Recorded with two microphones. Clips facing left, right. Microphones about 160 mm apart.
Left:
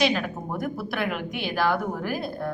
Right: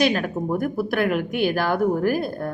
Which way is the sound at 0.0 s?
50° right (ahead or behind).